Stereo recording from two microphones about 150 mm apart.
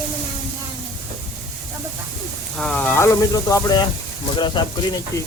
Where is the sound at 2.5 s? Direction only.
5° left (ahead or behind); by 4.6 s 30° left (ahead or behind).